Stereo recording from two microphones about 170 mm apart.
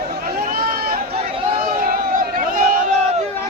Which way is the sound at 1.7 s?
55° right (ahead or behind).